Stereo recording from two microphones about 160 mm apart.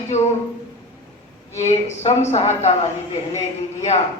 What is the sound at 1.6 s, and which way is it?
A man's voice, 45° left (ahead or behind).